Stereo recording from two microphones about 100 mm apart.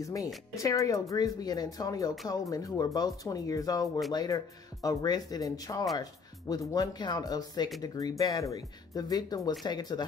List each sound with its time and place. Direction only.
0.0 s speech: 35° left (ahead or behind)